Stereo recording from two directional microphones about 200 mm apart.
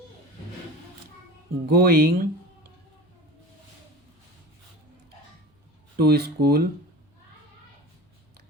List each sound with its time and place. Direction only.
1.6 s speech: 50° right (ahead or behind)
6.0 s speech: 50° right (ahead or behind)